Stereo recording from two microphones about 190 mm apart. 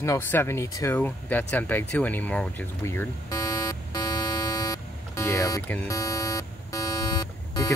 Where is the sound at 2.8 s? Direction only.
15° left (ahead or behind).